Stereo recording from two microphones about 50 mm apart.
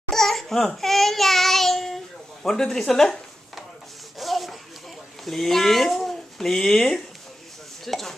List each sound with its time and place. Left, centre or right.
0.1 s crying: centre
0.7 s child singing: centre
2.4 s speech: centre
4.2 s rub: centre
5.2 s speech: centre